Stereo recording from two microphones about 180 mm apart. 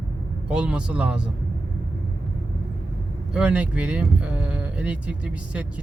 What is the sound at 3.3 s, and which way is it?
Speech, 5° right (ahead or behind).